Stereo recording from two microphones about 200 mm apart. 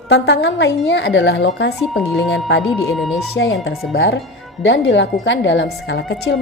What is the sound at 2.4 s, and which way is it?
Speech, 60° left (ahead or behind).